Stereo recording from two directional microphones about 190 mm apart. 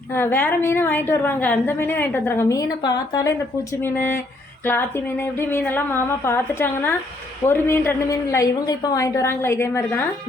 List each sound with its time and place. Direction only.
0.1 s a woman's voice: 10° left (ahead or behind)